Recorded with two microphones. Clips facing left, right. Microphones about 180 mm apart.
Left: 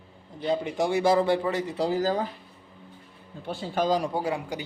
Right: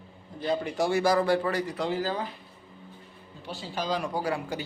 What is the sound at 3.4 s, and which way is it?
Speech, 55° left (ahead or behind).